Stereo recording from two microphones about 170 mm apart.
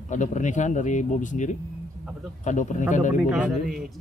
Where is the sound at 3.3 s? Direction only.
Centre (ahead or behind).